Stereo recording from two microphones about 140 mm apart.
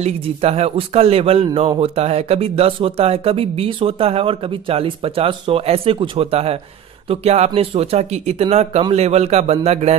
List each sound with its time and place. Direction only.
0.0 s a man's voice: 45° right (ahead or behind)